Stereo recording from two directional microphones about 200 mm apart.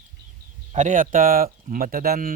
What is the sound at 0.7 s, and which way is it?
Speech, 40° right (ahead or behind).